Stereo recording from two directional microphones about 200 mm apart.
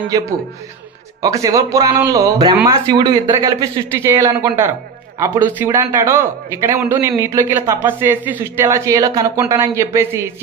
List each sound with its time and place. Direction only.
0.1 s a man's voice: 20° right (ahead or behind)